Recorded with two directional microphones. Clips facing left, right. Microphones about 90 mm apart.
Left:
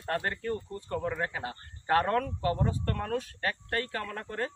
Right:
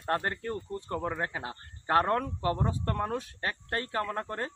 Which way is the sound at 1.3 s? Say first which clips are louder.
Left 1 dB; 20° right (ahead or behind).